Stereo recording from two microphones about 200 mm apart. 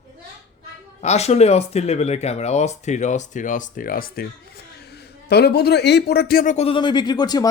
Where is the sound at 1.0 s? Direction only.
35° left (ahead or behind).